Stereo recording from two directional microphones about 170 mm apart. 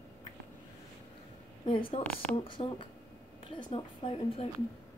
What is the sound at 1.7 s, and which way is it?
A woman's voice, 30° left (ahead or behind).